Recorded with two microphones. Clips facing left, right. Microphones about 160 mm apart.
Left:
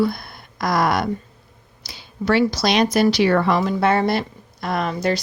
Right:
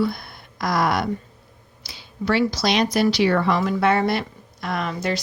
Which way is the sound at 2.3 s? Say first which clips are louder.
Left 3 dB; 45° left (ahead or behind).